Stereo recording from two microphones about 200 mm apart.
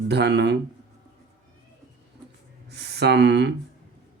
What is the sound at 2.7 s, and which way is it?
Speech, 55° right (ahead or behind).